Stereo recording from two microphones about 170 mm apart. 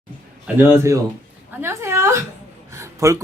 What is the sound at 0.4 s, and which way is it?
Speech, 15° right (ahead or behind).